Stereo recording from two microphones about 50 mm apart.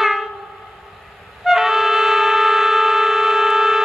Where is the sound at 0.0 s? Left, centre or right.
Centre.